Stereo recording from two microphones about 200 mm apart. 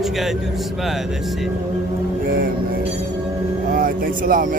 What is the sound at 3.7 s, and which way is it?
Speech, 45° right (ahead or behind).